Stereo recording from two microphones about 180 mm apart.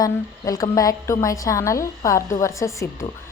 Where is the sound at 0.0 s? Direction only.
20° left (ahead or behind).